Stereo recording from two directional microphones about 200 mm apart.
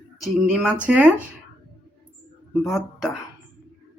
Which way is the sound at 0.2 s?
5° right (ahead or behind).